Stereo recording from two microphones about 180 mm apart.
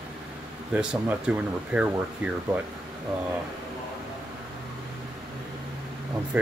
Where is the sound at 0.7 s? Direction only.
5° right (ahead or behind).